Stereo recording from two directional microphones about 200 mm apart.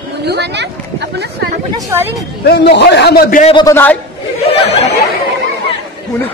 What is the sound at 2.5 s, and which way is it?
Speech, 55° left (ahead or behind).